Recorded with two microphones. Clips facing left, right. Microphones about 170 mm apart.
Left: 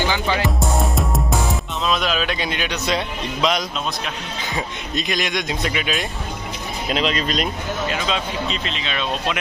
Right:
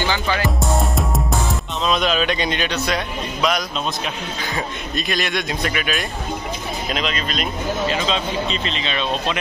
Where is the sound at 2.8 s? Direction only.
25° left (ahead or behind).